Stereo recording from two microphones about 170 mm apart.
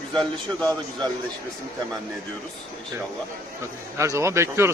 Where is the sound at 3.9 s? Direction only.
15° right (ahead or behind).